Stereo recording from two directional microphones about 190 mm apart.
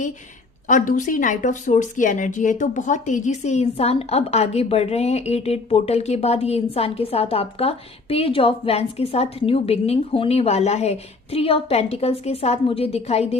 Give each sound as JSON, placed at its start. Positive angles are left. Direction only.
{"t": 0.7, "sound": "a woman's voice", "side_deg": 40}